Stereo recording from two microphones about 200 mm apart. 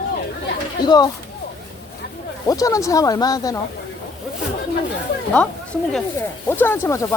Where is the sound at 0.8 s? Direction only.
20° left (ahead or behind).